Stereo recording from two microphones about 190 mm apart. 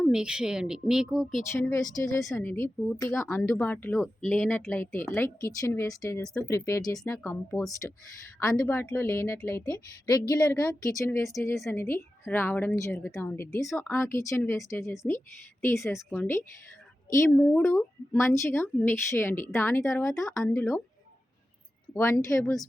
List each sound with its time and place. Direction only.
0.0 s speech: 5° right (ahead or behind)
1.5 s speech: 15° left (ahead or behind)
15.8 s speech: centre (ahead or behind)
16.1 s speech: 10° left (ahead or behind)
21.9 s speech: 15° left (ahead or behind)